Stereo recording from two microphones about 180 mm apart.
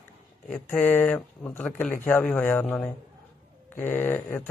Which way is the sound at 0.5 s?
10° left (ahead or behind).